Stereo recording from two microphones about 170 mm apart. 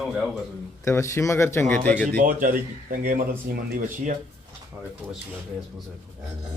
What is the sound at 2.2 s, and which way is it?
Speech, 50° right (ahead or behind).